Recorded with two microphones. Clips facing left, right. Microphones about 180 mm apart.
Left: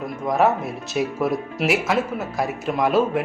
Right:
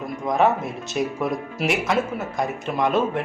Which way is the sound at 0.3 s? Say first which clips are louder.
Left 1 dB; centre (ahead or behind).